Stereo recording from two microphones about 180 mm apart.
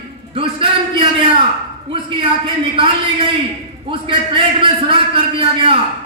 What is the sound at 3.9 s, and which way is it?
A man's voice, 30° right (ahead or behind).